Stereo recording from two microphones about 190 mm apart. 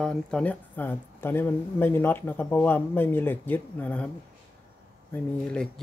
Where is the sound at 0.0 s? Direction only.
5° left (ahead or behind).